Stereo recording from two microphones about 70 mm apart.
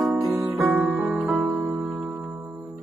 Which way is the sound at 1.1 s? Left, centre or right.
Right.